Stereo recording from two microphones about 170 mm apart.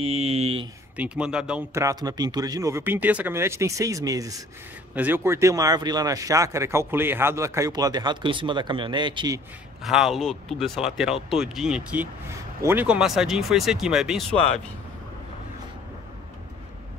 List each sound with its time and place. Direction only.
0.0 s speech: 35° right (ahead or behind)
0.9 s speech: 5° right (ahead or behind)
1.7 s speech: 20° right (ahead or behind)
9.8 s speech: centre (ahead or behind)